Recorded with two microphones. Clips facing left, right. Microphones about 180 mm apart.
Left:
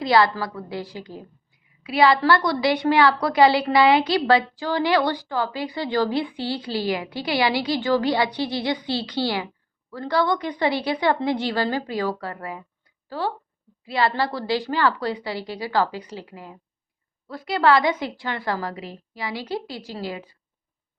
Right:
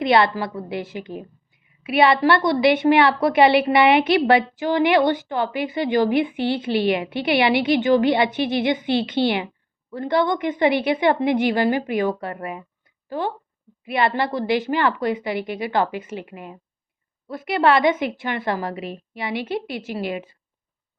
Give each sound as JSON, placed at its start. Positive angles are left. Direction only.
{"t": 0.0, "sound": "a woman's voice", "side_deg": -20}